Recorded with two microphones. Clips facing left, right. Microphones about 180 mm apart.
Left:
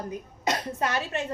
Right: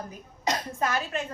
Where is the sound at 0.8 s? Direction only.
30° left (ahead or behind).